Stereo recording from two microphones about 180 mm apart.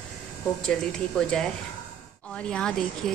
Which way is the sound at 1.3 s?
5° left (ahead or behind).